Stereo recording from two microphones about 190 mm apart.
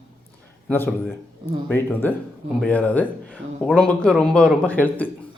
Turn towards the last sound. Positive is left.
turn(degrees=10)  # may be behind; listen again after turning